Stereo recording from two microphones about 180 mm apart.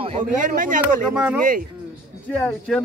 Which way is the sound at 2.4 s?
10° left (ahead or behind).